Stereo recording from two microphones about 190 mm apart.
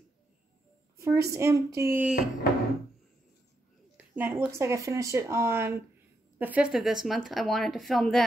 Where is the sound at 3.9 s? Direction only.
10° right (ahead or behind).